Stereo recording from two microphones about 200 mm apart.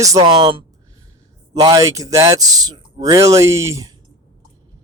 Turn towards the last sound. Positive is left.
turn(degrees=-15)  # may be behind; listen again after turning